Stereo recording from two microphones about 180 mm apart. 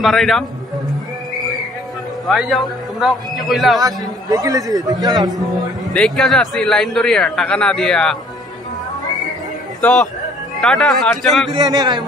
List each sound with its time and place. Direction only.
0.0 s a man's voice: centre (ahead or behind)
2.2 s a man's voice: centre (ahead or behind)
3.8 s a man's voice: 20° right (ahead or behind)
5.9 s a man's voice: centre (ahead or behind)
9.8 s a man's voice: 5° left (ahead or behind)
11.5 s a man's voice: 20° right (ahead or behind)